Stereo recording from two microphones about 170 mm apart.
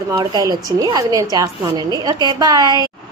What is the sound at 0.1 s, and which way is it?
A woman's voice, 25° right (ahead or behind).